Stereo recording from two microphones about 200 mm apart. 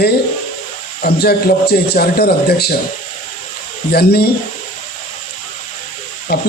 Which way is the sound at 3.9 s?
50° left (ahead or behind).